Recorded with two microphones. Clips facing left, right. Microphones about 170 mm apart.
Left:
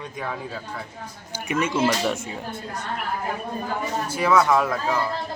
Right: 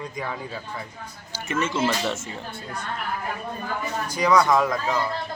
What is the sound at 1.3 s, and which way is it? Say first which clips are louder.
A man's voice: left 2 dB; 15° left (ahead or behind).